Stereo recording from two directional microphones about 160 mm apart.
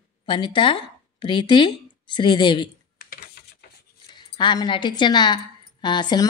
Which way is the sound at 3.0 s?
75° left (ahead or behind).